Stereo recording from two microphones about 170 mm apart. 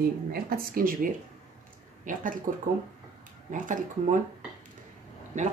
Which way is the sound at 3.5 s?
50° right (ahead or behind).